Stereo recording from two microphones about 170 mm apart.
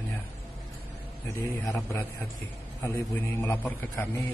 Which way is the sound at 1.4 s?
15° left (ahead or behind).